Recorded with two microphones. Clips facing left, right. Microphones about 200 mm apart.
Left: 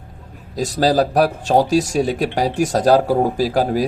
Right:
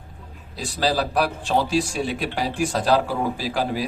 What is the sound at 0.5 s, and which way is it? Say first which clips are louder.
Speech: left 7 dB; 45° left (ahead or behind).